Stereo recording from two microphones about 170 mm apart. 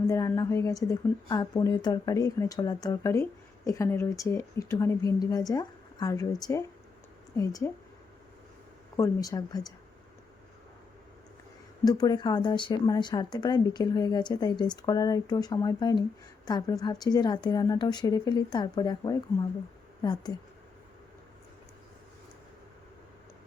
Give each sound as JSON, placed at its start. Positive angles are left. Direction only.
{"t": 0.1, "sound": "a woman's voice", "side_deg": 20}
{"t": 9.0, "sound": "a woman's voice", "side_deg": 20}
{"t": 11.9, "sound": "a woman's voice", "side_deg": 20}